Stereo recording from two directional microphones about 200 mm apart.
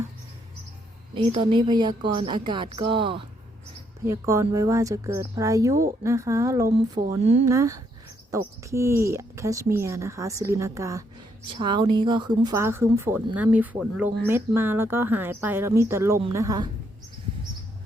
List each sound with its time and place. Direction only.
1.1 s a woman's voice: 25° right (ahead or behind)
4.0 s speech: 15° right (ahead or behind)
7.2 s speech: 35° right (ahead or behind)
7.4 s speech: 15° right (ahead or behind)